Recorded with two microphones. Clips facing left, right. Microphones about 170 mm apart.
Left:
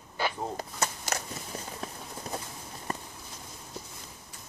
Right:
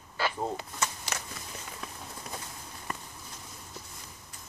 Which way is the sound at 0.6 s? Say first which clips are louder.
Left 2 dB; 40° left (ahead or behind).